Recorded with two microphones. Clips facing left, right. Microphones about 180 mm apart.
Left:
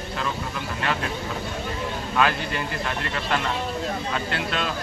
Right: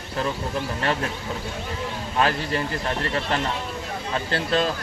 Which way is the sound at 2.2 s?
35° right (ahead or behind).